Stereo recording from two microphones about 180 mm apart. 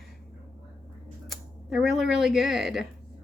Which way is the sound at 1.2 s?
Centre (ahead or behind).